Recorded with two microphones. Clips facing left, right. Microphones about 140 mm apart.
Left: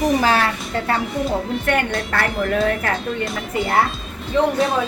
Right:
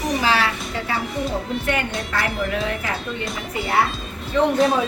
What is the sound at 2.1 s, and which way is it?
Speech, 50° left (ahead or behind).